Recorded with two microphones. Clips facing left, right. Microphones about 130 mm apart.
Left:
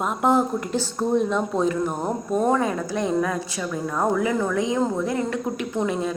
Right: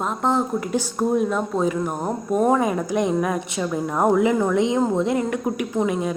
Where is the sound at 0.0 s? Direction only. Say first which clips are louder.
Left 1 dB; 5° left (ahead or behind).